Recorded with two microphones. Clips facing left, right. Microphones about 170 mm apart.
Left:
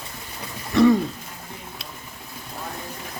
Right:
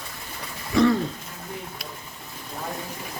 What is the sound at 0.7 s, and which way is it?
Throat clearing, centre (ahead or behind).